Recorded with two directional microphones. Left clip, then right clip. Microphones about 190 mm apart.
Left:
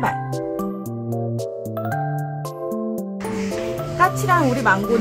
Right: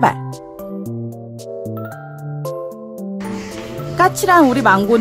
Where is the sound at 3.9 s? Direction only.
50° right (ahead or behind).